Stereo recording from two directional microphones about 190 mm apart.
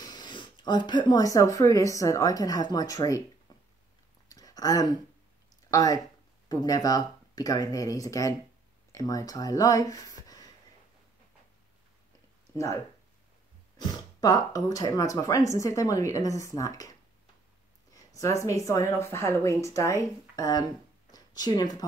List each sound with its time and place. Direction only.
0.0 s speech: 20° left (ahead or behind)
3.5 s a sound: 20° left (ahead or behind)
5.7 s speech: 20° left (ahead or behind)
13.7 s speech: 20° left (ahead or behind)
17.9 s speech: 15° left (ahead or behind)
21.1 s a sound: 20° left (ahead or behind)